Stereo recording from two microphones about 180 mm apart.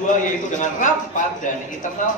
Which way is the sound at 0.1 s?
45° left (ahead or behind).